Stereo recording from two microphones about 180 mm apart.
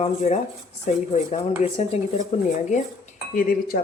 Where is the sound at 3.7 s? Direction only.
60° left (ahead or behind).